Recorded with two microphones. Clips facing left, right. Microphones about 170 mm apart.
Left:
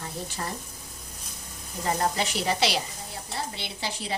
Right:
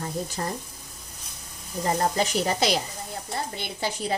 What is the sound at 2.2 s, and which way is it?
A woman's voice, 45° right (ahead or behind).